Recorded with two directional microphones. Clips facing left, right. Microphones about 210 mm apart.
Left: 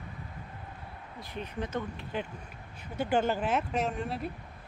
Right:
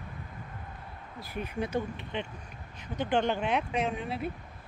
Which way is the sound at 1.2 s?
10° right (ahead or behind).